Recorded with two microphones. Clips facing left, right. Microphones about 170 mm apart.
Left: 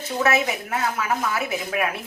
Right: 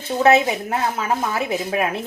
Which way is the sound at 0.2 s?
30° right (ahead or behind).